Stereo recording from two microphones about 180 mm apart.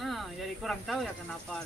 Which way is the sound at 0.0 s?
Centre (ahead or behind).